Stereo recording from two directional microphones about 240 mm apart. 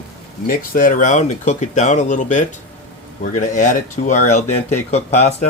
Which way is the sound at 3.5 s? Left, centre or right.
Left.